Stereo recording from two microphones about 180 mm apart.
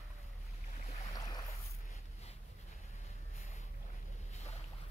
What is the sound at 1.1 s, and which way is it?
Boat, 20° left (ahead or behind).